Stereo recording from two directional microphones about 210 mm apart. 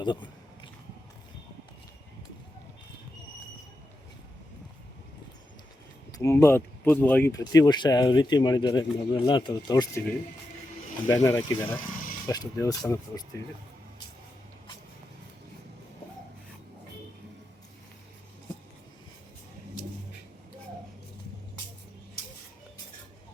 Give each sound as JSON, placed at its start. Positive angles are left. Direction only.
{"t": 0.0, "sound": "biting", "side_deg": 20}
{"t": 6.1, "sound": "speech", "side_deg": 15}
{"t": 11.1, "sound": "speech", "side_deg": 15}